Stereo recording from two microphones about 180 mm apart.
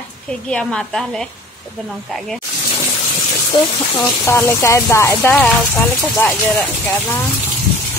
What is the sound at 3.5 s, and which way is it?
Speech, 25° left (ahead or behind).